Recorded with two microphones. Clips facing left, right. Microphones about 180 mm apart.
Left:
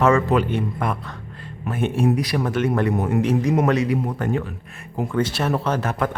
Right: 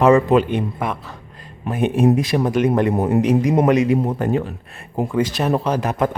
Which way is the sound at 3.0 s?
30° right (ahead or behind).